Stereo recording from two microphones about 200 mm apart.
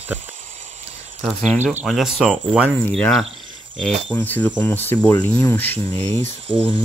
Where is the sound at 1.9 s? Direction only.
Centre (ahead or behind).